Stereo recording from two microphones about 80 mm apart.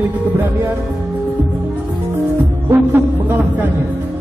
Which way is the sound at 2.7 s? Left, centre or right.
Right.